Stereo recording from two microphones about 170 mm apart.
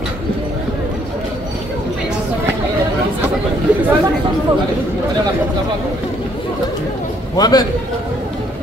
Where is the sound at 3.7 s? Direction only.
5° right (ahead or behind).